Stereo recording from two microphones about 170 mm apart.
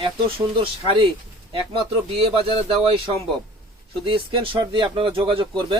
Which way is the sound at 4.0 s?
30° right (ahead or behind).